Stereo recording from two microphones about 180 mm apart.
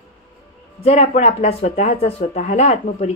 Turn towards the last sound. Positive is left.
turn(degrees=35)  # may be behind; listen again after turning